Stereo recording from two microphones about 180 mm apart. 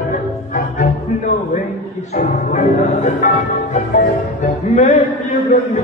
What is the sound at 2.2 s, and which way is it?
Speech, 40° left (ahead or behind).